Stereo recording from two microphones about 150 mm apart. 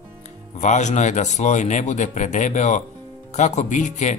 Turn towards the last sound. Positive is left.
turn(degrees=50)  # may be behind; listen again after turning